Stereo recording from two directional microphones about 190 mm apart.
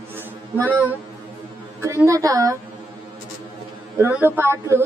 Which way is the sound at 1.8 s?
15° right (ahead or behind).